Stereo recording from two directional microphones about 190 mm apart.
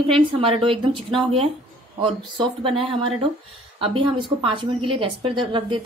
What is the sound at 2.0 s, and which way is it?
A woman's voice, 30° right (ahead or behind).